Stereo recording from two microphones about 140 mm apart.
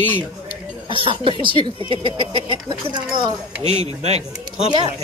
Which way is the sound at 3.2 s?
50° right (ahead or behind).